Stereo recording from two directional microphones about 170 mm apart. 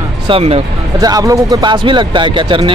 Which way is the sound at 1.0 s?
20° right (ahead or behind).